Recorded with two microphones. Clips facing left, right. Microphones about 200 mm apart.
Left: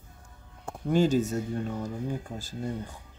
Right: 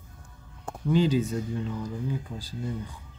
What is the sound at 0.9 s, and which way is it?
Speech, 45° left (ahead or behind).